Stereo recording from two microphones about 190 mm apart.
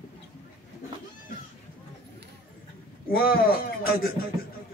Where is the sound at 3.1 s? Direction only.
50° left (ahead or behind).